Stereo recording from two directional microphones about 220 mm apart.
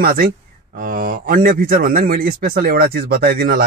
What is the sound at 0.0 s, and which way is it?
A man's voice, 40° right (ahead or behind).